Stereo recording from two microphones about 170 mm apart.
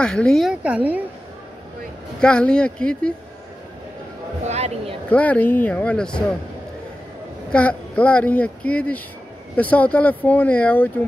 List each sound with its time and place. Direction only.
0.0 s a woman's voice: 5° left (ahead or behind)
2.1 s a woman's voice: 5° left (ahead or behind)
4.5 s speech: 40° right (ahead or behind)
5.1 s speech: 10° left (ahead or behind)
7.5 s speech: 5° left (ahead or behind)